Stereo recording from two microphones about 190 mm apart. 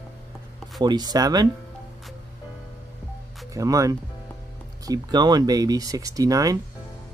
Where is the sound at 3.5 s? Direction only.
15° right (ahead or behind).